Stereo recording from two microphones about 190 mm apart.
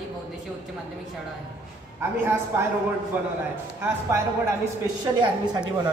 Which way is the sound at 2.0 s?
15° right (ahead or behind).